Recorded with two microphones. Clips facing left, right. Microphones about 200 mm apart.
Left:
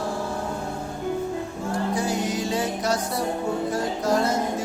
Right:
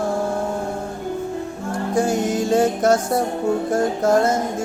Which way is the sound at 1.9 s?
50° right (ahead or behind).